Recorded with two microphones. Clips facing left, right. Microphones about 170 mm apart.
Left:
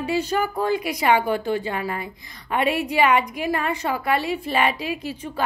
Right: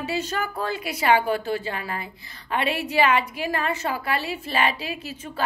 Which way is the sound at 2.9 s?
15° left (ahead or behind).